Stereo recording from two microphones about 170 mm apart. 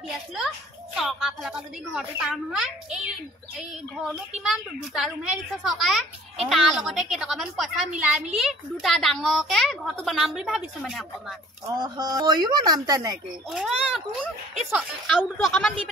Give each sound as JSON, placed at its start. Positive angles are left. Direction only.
{"t": 0.9, "sound": "a woman's voice", "side_deg": 0}
{"t": 11.6, "sound": "speech", "side_deg": -25}
{"t": 13.5, "sound": "a woman's voice", "side_deg": 0}